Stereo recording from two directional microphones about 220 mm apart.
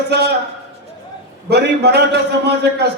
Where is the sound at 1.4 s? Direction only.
50° right (ahead or behind).